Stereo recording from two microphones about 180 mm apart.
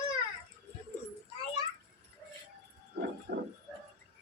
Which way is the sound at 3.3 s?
55° right (ahead or behind).